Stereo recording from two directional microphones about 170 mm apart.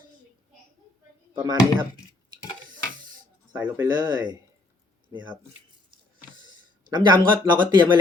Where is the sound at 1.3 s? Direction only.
25° right (ahead or behind).